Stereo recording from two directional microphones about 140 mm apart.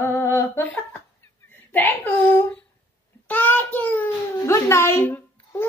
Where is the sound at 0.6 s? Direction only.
10° left (ahead or behind).